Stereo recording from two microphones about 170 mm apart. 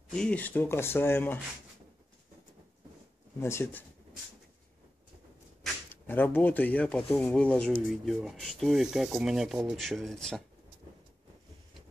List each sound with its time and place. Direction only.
0.1 s speech: 5° left (ahead or behind)
3.3 s speech: 15° left (ahead or behind)
6.0 s speech: 10° left (ahead or behind)